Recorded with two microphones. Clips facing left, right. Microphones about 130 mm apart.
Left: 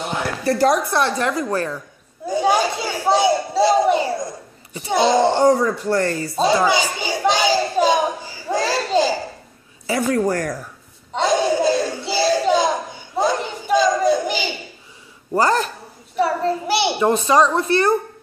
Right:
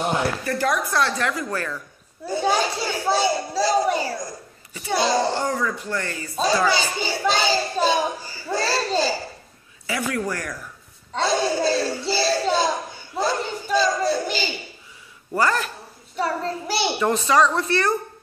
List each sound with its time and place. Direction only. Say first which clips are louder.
0.4 s speech: left 6 dB; 35° left (ahead or behind)
0.9 s a child's voice: left 3 dB; 20° left (ahead or behind)
2.2 s a child's voice: left 4 dB; 15° left (ahead or behind)
5.4 s speech: left 9 dB; 35° left (ahead or behind)
6.4 s a child's voice: left 3 dB; 20° left (ahead or behind)
9.8 s speech: left 7 dB; 35° left (ahead or behind)
11.1 s a child's voice: left 4 dB; 15° left (ahead or behind)
13.2 s a sound: left 4 dB; 15° left (ahead or behind)
15.3 s speech: left 4 dB; 30° left (ahead or behind)
16.8 s a child's voice: left 2 dB; 20° left (ahead or behind)